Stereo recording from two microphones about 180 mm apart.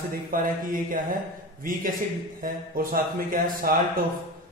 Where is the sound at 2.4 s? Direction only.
50° right (ahead or behind).